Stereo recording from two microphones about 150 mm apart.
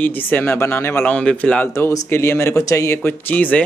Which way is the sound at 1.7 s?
20° left (ahead or behind).